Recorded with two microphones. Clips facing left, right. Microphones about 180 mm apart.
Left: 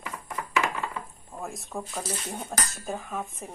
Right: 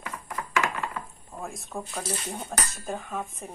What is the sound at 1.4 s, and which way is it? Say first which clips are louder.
Speech: even; centre (ahead or behind).